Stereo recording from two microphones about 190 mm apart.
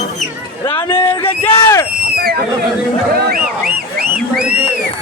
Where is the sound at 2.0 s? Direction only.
55° right (ahead or behind).